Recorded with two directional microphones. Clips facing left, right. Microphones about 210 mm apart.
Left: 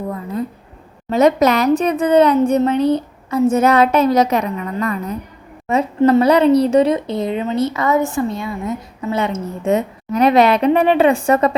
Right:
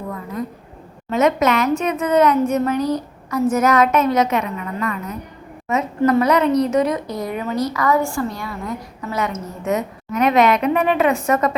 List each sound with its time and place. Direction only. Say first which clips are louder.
1.1 s a woman's voice: left 4 dB; 35° left (ahead or behind)